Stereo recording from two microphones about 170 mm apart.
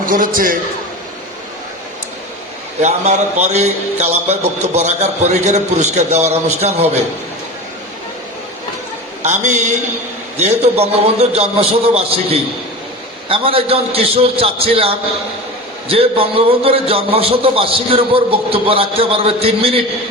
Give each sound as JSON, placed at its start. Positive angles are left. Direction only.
{"t": 0.0, "sound": "a man's voice", "side_deg": -55}
{"t": 2.8, "sound": "speech", "side_deg": -45}
{"t": 9.2, "sound": "a man's voice", "side_deg": -45}